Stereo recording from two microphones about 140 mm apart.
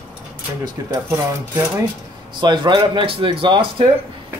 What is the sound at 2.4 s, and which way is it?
Speech, 35° right (ahead or behind).